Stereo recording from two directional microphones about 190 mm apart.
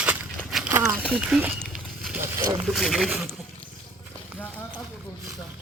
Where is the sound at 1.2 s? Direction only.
5° right (ahead or behind).